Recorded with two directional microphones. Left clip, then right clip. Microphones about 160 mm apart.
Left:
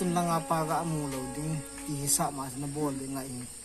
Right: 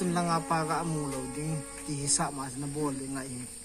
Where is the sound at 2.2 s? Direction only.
Centre (ahead or behind).